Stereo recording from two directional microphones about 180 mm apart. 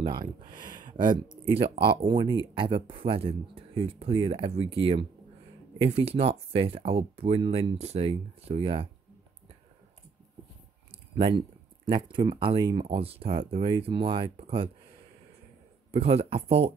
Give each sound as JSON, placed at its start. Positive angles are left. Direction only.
{"t": 0.0, "sound": "speech", "side_deg": -25}
{"t": 11.1, "sound": "speech", "side_deg": -30}
{"t": 15.9, "sound": "speech", "side_deg": -35}